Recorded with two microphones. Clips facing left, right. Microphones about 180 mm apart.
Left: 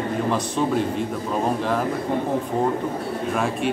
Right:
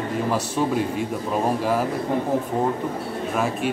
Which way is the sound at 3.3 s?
Centre (ahead or behind).